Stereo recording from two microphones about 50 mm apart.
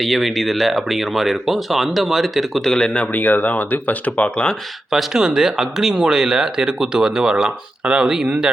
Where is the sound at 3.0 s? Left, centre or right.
Left.